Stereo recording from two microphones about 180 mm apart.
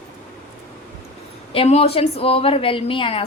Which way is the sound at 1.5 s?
30° left (ahead or behind).